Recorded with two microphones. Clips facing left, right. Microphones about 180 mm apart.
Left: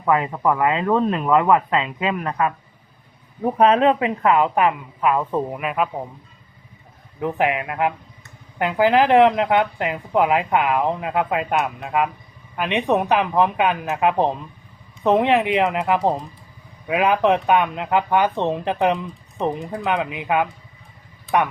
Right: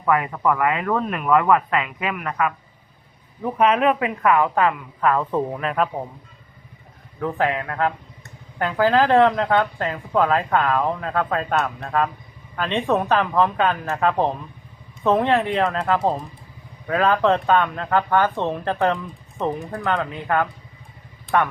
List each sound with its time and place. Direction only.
0.0 s speech: 20° left (ahead or behind); by 6.1 s 5° left (ahead or behind)
7.2 s speech: 15° left (ahead or behind)